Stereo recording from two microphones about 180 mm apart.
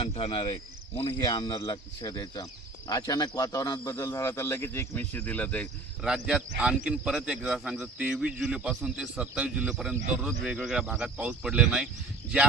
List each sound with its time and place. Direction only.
0.0 s speech: 30° left (ahead or behind); by 6.1 s 10° left (ahead or behind)
6.1 s a man's voice: 5° right (ahead or behind)